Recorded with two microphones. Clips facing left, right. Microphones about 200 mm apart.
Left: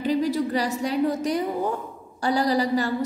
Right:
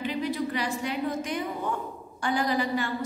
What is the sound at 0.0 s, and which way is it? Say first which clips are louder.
A woman's voice: left 6 dB; 40° left (ahead or behind).